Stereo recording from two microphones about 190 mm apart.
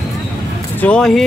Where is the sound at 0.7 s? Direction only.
5° left (ahead or behind).